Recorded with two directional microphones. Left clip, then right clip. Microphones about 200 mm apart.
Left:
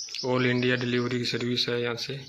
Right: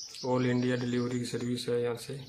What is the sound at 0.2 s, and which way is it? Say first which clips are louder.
Speech: left 4 dB; 10° left (ahead or behind).